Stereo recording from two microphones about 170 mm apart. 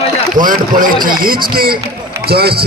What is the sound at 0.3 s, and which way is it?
Speech, 55° right (ahead or behind).